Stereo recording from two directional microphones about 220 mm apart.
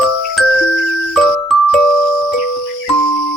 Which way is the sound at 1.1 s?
Centre (ahead or behind).